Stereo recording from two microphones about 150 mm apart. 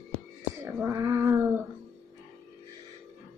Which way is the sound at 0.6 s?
20° right (ahead or behind).